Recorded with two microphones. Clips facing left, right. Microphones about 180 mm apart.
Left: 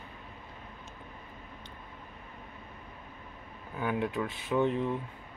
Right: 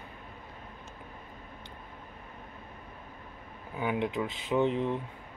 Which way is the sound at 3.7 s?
15° right (ahead or behind).